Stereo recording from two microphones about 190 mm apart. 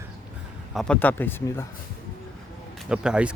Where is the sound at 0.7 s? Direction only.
Centre (ahead or behind).